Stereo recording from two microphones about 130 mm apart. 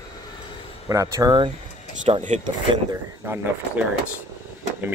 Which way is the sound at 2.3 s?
65° right (ahead or behind).